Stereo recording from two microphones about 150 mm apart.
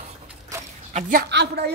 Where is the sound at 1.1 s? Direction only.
90° right.